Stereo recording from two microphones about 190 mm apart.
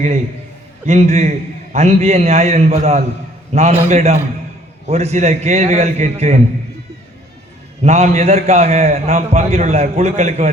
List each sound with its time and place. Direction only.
0.9 s a man's voice: 35° right (ahead or behind)
7.9 s a man's voice: 35° right (ahead or behind)